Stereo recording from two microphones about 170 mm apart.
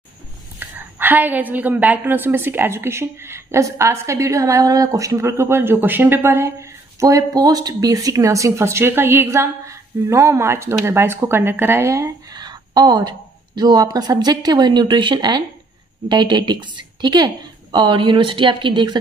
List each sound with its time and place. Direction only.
0.6 s a woman's voice: 10° right (ahead or behind); by 18.9 s 25° right (ahead or behind)